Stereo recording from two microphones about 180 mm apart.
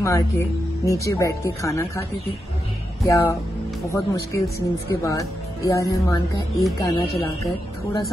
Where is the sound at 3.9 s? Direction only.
15° left (ahead or behind).